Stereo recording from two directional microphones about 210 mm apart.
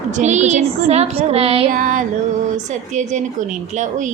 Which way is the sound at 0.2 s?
35° right (ahead or behind).